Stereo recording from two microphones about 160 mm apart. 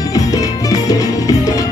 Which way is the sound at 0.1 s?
20° left (ahead or behind).